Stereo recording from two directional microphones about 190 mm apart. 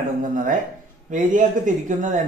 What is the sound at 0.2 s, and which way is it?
A man's voice, 45° right (ahead or behind).